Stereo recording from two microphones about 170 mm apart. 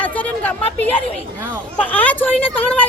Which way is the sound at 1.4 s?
10° right (ahead or behind).